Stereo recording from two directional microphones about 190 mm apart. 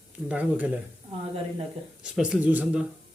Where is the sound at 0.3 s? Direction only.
10° right (ahead or behind).